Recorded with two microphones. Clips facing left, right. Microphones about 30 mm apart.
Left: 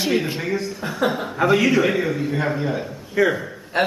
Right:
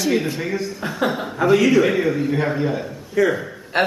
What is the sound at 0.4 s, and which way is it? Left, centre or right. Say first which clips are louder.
Speech: even; centre.